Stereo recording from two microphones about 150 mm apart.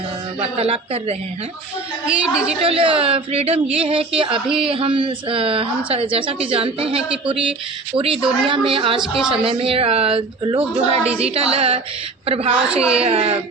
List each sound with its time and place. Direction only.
0.3 s a woman's voice: 40° right (ahead or behind)
2.0 s a woman's voice: 5° right (ahead or behind)
2.6 s a woman's voice: 40° right (ahead or behind)
4.4 s a man's voice: 5° right (ahead or behind)
4.7 s a woman's voice: 35° right (ahead or behind)